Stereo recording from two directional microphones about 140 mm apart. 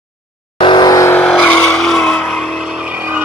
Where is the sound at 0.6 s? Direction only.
35° left (ahead or behind).